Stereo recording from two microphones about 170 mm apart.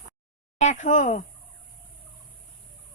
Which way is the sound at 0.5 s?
45° left (ahead or behind).